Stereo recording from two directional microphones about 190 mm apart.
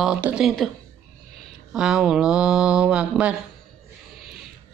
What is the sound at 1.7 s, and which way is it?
A woman's voice, 5° right (ahead or behind).